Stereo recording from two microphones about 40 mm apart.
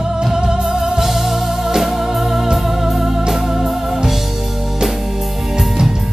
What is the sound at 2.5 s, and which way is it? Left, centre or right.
Music, centre.